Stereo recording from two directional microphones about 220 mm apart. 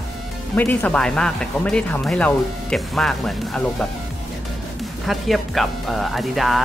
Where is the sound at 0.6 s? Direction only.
5° left (ahead or behind).